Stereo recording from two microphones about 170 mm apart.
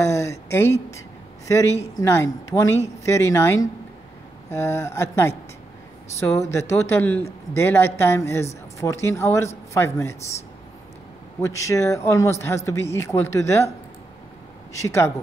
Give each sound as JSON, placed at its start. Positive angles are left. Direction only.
{"t": 0.0, "sound": "a sound", "side_deg": 15}
{"t": 2.0, "sound": "a man's voice", "side_deg": 15}
{"t": 11.4, "sound": "a man's voice", "side_deg": 20}
{"t": 14.7, "sound": "a man's voice", "side_deg": 15}